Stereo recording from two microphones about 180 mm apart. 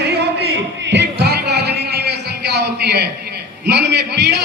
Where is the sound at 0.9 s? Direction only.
65° right (ahead or behind).